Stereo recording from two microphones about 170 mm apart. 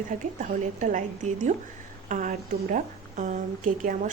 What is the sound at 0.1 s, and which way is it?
A woman's voice, 50° right (ahead or behind).